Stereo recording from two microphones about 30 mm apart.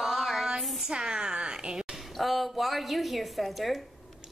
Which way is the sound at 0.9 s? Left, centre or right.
Right.